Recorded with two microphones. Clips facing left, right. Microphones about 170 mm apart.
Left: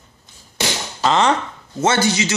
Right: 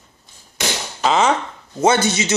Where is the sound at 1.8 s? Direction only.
20° right (ahead or behind).